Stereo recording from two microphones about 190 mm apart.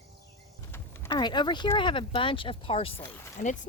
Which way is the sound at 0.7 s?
15° left (ahead or behind).